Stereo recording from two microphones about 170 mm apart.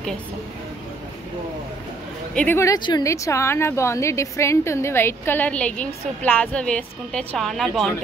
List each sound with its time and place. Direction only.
2.3 s a woman's voice: 10° left (ahead or behind)